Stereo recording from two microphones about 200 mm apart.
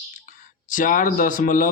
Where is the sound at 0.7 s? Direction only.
40° left (ahead or behind).